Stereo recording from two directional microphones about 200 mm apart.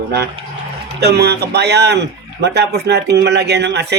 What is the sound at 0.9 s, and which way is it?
A man's voice, 55° right (ahead or behind).